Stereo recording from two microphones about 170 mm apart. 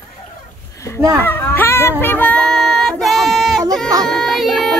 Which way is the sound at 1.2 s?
10° left (ahead or behind).